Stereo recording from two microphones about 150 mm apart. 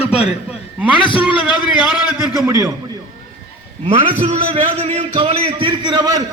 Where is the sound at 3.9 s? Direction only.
40° right (ahead or behind).